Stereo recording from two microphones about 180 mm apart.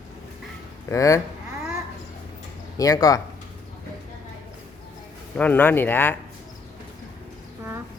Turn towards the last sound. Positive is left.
turn(degrees=10)  # may be behind; listen again after turning